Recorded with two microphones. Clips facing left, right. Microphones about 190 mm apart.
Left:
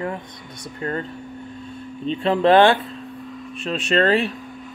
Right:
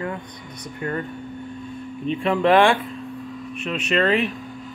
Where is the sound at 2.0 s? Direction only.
30° left (ahead or behind).